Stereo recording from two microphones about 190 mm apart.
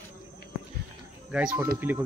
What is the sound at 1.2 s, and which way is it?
Speech, 5° right (ahead or behind).